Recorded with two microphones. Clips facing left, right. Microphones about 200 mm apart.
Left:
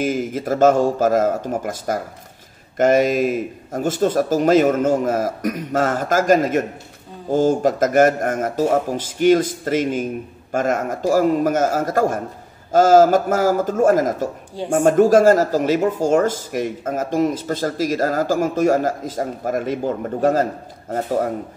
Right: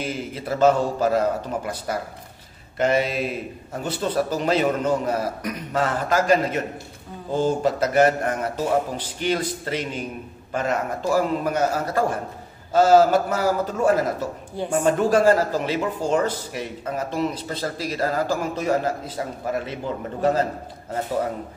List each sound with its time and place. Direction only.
0.0 s speech: 45° left (ahead or behind)